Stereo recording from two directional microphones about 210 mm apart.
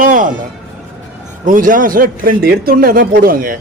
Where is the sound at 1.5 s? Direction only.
40° right (ahead or behind).